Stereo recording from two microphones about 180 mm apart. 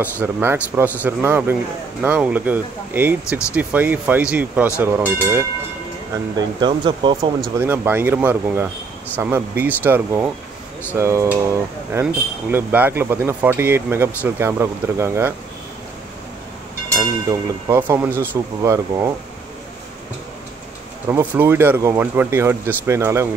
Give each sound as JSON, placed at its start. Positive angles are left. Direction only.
{"t": 0.0, "sound": "speech", "side_deg": -10}
{"t": 6.3, "sound": "speech", "side_deg": -25}
{"t": 7.5, "sound": "speech", "side_deg": -10}
{"t": 17.3, "sound": "speech", "side_deg": -15}
{"t": 21.1, "sound": "speech", "side_deg": -10}